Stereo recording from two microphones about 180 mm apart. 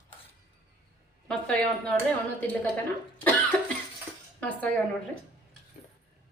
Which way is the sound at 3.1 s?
10° left (ahead or behind).